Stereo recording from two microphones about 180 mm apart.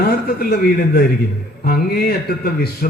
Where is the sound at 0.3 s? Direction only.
55° left (ahead or behind).